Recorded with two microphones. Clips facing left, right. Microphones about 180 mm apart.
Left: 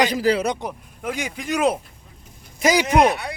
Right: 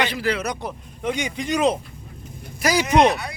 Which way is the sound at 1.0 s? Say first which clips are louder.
Right 3 dB; 5° left (ahead or behind).